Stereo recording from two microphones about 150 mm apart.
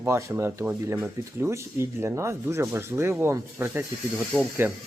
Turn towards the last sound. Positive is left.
turn(degrees=-5)  # may be behind; listen again after turning